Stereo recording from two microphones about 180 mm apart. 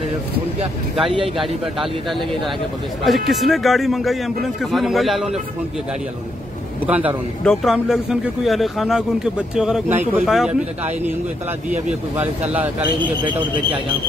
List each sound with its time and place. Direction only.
1.4 s speech: centre (ahead or behind)
7.4 s speech: centre (ahead or behind)
12.2 s speech: 10° right (ahead or behind)
13.0 s a man's voice: 25° right (ahead or behind)